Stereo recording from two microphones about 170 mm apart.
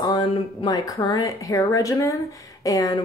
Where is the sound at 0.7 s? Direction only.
25° left (ahead or behind).